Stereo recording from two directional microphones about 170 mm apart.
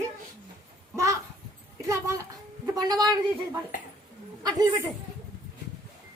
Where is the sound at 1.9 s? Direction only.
15° right (ahead or behind).